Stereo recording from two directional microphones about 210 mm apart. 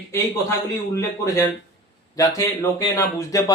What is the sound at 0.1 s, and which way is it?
Speech, 15° left (ahead or behind).